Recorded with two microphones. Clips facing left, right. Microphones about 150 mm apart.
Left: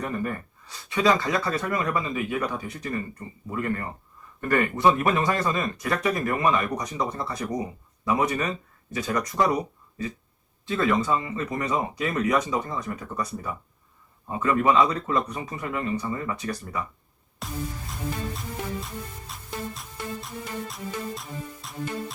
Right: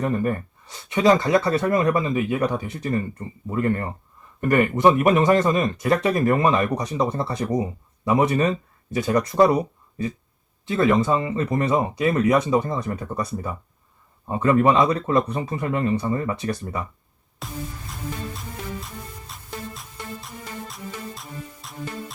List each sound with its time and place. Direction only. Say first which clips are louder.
0.0 s speech: right 6 dB; 30° right (ahead or behind)
10.8 s speech: right 5 dB; 25° right (ahead or behind)
17.4 s music: even; centre (ahead or behind)
19.3 s music: left 1 dB; centre (ahead or behind)